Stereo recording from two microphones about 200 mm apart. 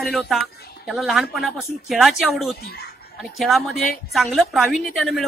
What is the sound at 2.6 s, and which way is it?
Speech, 50° left (ahead or behind).